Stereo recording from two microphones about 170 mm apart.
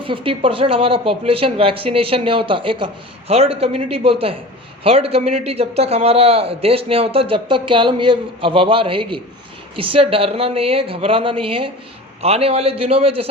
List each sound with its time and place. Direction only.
0.0 s a man's voice: 30° right (ahead or behind)